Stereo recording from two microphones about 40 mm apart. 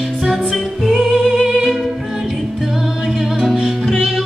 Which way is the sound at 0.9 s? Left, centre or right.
Centre.